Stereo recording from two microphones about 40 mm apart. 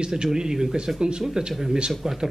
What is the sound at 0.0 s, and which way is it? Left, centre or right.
Speech, centre.